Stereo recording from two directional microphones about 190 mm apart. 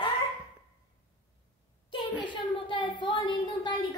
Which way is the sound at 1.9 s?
25° left (ahead or behind).